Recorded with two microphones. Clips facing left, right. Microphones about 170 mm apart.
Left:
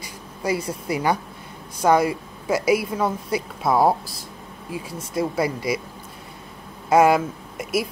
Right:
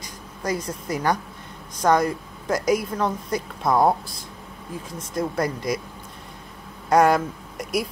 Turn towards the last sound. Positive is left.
turn(degrees=5)  # may be behind; listen again after turning